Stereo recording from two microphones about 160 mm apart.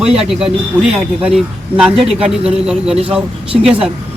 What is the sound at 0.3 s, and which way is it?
Speech, 5° right (ahead or behind).